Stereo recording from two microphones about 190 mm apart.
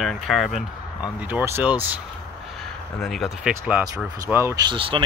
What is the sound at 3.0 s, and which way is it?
Speech, centre (ahead or behind).